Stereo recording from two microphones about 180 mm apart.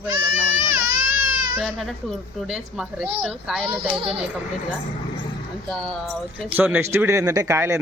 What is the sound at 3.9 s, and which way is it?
Speech, 30° right (ahead or behind).